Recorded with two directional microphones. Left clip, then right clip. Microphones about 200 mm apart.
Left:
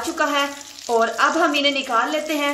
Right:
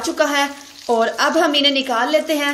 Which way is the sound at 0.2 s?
35° right (ahead or behind).